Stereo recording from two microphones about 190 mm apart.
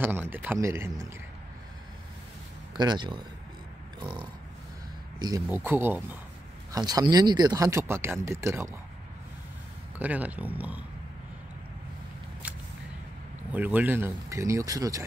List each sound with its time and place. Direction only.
0.0 s speech: 10° right (ahead or behind)
2.7 s speech: 25° right (ahead or behind)
5.5 s speech: 10° right (ahead or behind)
9.9 s speech: 10° right (ahead or behind)
13.5 s speech: 10° right (ahead or behind)